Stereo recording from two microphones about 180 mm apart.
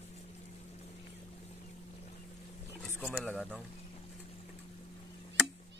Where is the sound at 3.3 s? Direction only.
5° left (ahead or behind).